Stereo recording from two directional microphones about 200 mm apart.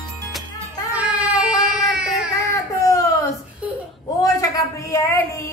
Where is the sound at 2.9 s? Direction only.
15° left (ahead or behind).